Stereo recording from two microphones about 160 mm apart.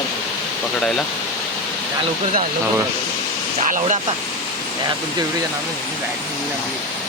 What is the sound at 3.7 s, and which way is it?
Speech, 50° right (ahead or behind).